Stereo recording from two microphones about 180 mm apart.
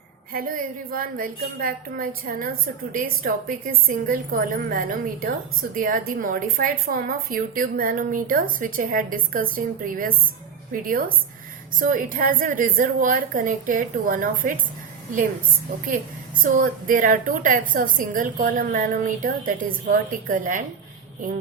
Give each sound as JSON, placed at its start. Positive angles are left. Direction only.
{"t": 0.3, "sound": "speech", "side_deg": -55}
{"t": 16.4, "sound": "speech", "side_deg": -45}